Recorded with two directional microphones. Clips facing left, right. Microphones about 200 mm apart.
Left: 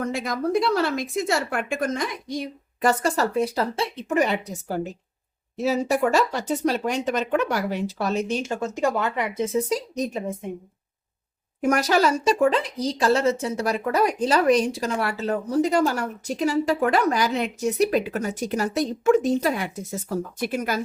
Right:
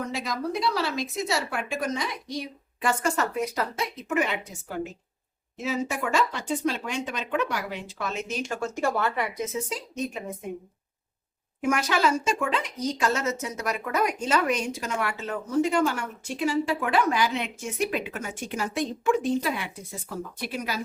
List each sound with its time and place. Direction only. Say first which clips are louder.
0.0 s a woman's voice: left 5 dB; 50° left (ahead or behind)
2.8 s speech: left 4 dB; 35° left (ahead or behind)
8.4 s speech: left 3 dB; 20° left (ahead or behind)
9.4 s speech: left 7 dB; 35° left (ahead or behind)
11.6 s speech: left 4 dB; 40° left (ahead or behind)